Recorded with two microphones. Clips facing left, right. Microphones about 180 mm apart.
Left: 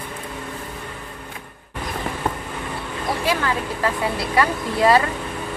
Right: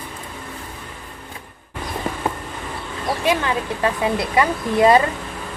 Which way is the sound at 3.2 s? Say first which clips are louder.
Right 3 dB; 20° right (ahead or behind).